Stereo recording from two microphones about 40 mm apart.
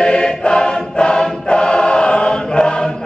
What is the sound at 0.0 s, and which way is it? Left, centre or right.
Choir, left.